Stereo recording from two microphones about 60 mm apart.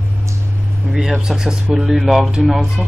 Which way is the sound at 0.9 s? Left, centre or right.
Centre.